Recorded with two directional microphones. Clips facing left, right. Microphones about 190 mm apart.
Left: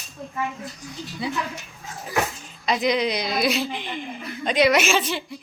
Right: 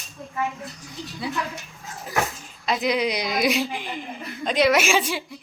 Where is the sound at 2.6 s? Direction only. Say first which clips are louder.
Left 1 dB; 5° right (ahead or behind).